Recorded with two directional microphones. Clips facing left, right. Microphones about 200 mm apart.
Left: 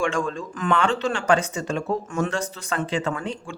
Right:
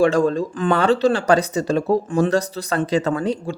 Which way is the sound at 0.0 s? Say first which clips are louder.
Right 9 dB; 35° right (ahead or behind).